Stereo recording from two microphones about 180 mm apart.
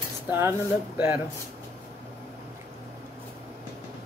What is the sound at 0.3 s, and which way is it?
Speech, 10° right (ahead or behind).